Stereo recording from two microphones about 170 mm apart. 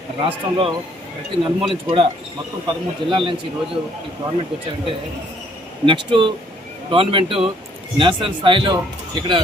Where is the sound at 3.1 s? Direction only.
30° right (ahead or behind).